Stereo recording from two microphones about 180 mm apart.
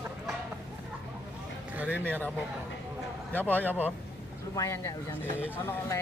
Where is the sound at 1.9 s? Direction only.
10° left (ahead or behind).